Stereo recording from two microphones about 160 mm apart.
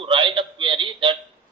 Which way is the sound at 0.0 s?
35° right (ahead or behind).